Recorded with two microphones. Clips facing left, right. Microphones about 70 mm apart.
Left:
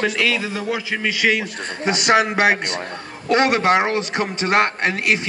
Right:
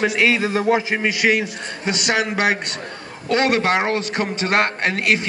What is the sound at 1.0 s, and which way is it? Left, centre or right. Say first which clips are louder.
Speech: right 1 dB; centre.